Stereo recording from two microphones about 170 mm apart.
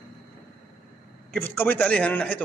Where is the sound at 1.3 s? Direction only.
10° left (ahead or behind).